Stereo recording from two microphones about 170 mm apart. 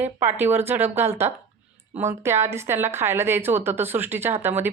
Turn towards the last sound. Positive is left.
turn(degrees=-10)  # may be behind; listen again after turning